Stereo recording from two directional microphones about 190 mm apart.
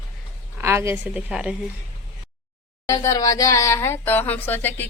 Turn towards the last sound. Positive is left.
turn(degrees=10)  # may be behind; listen again after turning